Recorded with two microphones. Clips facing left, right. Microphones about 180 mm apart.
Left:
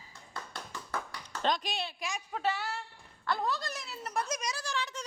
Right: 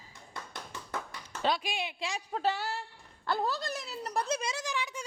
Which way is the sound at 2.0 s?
30° right (ahead or behind).